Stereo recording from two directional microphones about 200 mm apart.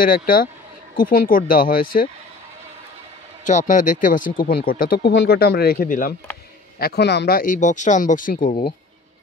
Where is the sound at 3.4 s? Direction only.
40° left (ahead or behind).